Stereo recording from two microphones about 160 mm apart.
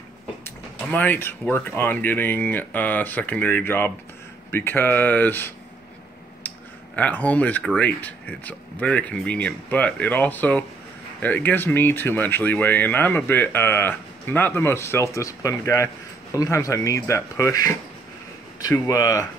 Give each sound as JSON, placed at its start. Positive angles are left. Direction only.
{"t": 0.8, "sound": "speech", "side_deg": 10}
{"t": 7.0, "sound": "speech", "side_deg": 10}